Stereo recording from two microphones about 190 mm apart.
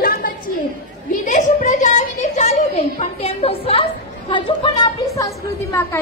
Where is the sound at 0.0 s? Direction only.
50° left (ahead or behind).